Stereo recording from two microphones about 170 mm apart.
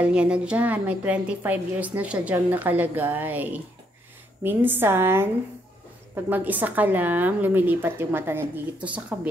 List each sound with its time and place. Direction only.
0.0 s a woman's voice: 5° right (ahead or behind)